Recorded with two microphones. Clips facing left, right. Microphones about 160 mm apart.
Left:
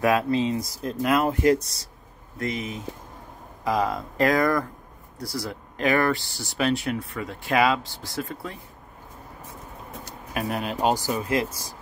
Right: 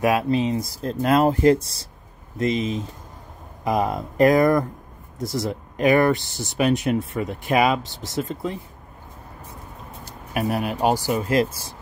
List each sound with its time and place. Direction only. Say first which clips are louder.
0.0 s speech: right 2 dB; 15° right (ahead or behind)
0.8 s speech: right 4 dB; 30° right (ahead or behind)
10.4 s speech: right 5 dB; 40° right (ahead or behind)
10.7 s speech: right 1 dB; 5° right (ahead or behind)